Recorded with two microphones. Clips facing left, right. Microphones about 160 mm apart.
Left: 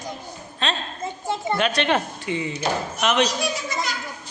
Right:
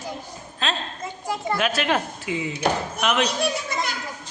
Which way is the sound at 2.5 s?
60° right (ahead or behind).